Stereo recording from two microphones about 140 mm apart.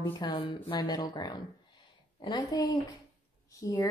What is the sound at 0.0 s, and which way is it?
Speech, 30° left (ahead or behind).